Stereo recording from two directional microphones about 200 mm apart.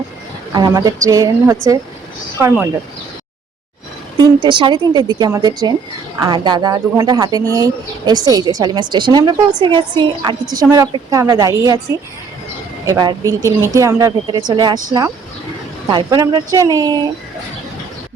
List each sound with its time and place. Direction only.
0.5 s a woman's voice: 20° right (ahead or behind)
4.2 s a woman's voice: 25° right (ahead or behind)